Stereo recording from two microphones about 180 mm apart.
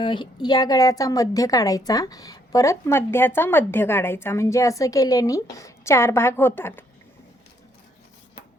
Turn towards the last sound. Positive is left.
turn(degrees=10)  # may be behind; listen again after turning